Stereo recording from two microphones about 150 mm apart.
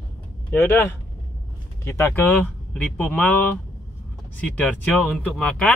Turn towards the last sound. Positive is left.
turn(degrees=5)  # may be behind; listen again after turning